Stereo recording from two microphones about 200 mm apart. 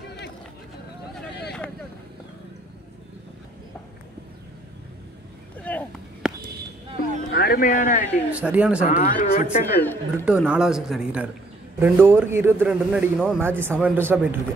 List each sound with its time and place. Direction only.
5.6 s a sound: 5° left (ahead or behind)
7.3 s speech: 45° left (ahead or behind)
8.3 s a man's voice: 5° right (ahead or behind)
8.8 s speech: 40° left (ahead or behind)
9.8 s speech: 10° left (ahead or behind)
10.2 s a man's voice: 5° right (ahead or behind)